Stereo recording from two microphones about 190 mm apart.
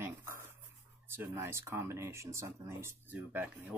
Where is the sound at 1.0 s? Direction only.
10° right (ahead or behind).